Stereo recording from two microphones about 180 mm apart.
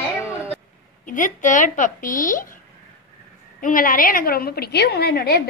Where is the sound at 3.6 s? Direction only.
50° left (ahead or behind).